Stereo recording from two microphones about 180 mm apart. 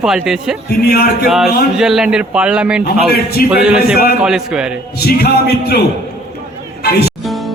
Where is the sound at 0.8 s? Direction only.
60° left (ahead or behind).